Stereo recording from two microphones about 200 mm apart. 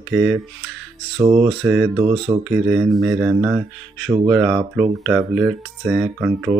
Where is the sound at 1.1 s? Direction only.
25° right (ahead or behind).